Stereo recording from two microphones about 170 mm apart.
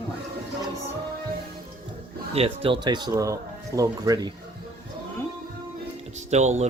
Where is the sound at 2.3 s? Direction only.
35° right (ahead or behind).